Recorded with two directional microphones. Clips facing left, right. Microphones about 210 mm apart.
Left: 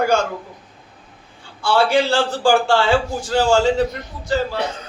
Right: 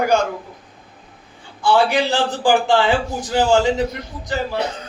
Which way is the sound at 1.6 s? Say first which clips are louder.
Even; 15° right (ahead or behind).